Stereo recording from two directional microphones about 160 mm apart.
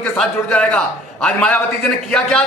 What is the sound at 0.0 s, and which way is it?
A man's voice, 5° left (ahead or behind).